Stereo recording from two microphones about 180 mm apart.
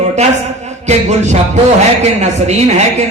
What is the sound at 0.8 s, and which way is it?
A man's voice, 40° right (ahead or behind).